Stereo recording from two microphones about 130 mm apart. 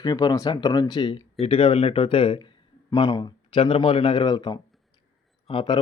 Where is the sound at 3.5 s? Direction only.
40° left (ahead or behind).